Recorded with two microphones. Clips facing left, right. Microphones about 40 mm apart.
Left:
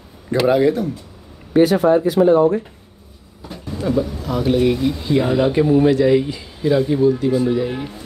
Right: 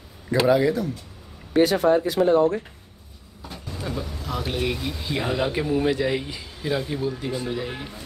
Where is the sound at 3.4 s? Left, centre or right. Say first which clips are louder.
Left 9 dB; centre.